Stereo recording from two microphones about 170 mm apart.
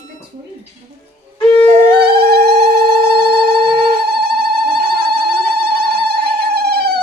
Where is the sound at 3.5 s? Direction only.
70° right (ahead or behind).